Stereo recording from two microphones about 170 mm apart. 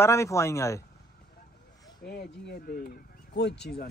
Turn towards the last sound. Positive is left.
turn(degrees=80)